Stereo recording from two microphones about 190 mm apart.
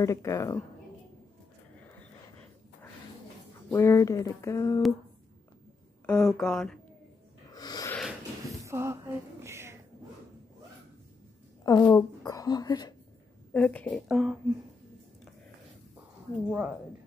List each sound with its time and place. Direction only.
0.0 s speech: 15° left (ahead or behind)
3.7 s speech: 15° left (ahead or behind)
6.0 s a woman's voice: 5° left (ahead or behind)
7.5 s snort: 20° left (ahead or behind)
8.5 s a sound: 15° right (ahead or behind)
11.6 s a woman's voice: 15° left (ahead or behind)
13.5 s a woman's voice: 5° left (ahead or behind)
16.4 s a woman's voice: 5° right (ahead or behind)